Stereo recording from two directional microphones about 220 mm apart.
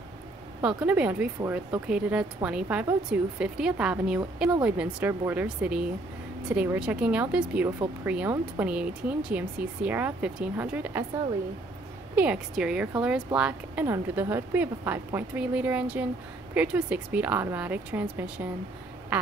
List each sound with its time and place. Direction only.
0.6 s speech: 5° right (ahead or behind)
12.2 s speech: 5° right (ahead or behind)